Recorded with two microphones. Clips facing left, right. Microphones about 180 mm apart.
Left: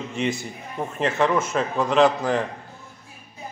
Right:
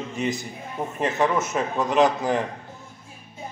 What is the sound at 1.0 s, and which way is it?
A man's voice, 20° right (ahead or behind).